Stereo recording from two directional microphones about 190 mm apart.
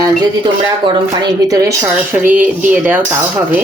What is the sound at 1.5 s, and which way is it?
A woman's voice, 15° right (ahead or behind).